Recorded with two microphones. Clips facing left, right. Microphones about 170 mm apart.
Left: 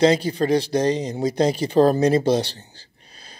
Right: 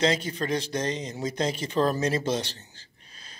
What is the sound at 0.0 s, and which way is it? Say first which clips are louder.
Speech: left 8 dB; 35° left (ahead or behind).